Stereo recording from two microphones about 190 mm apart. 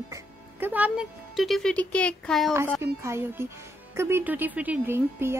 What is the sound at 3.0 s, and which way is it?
A woman's voice, 15° right (ahead or behind).